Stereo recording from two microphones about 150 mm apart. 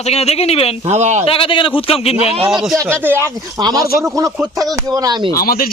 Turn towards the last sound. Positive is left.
turn(degrees=75)  # may be behind; listen again after turning